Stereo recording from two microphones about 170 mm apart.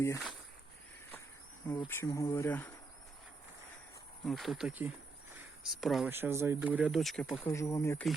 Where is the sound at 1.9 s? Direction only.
15° left (ahead or behind).